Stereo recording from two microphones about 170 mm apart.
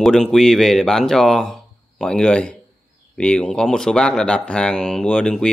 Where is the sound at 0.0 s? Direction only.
Centre (ahead or behind).